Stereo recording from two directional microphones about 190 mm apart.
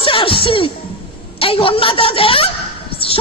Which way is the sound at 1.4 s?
30° left (ahead or behind).